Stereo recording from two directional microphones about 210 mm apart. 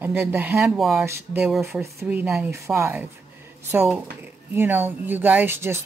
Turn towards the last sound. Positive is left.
turn(degrees=-10)  # may be behind; listen again after turning